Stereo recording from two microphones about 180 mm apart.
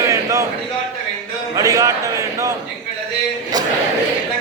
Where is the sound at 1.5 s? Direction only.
20° right (ahead or behind).